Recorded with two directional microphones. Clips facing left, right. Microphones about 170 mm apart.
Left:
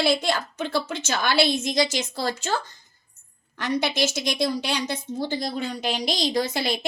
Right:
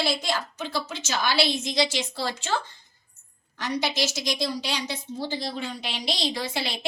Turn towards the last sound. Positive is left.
turn(degrees=45)  # may be behind; listen again after turning